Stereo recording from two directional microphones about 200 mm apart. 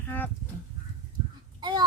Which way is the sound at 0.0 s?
10° left (ahead or behind).